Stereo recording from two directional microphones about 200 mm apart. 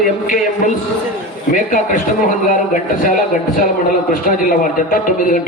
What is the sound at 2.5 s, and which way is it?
Speech, 40° left (ahead or behind).